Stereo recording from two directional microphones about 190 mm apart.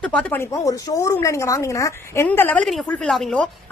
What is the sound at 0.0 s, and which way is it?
Speech, 5° left (ahead or behind).